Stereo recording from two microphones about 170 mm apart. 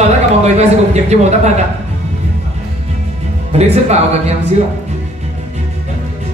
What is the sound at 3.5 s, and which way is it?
Speech, 40° right (ahead or behind).